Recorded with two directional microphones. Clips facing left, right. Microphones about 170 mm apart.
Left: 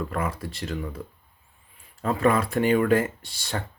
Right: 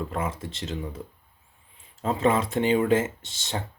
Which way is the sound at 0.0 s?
20° right (ahead or behind).